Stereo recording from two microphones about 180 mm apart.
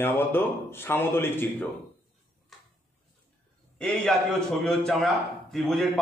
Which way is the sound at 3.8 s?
Centre (ahead or behind).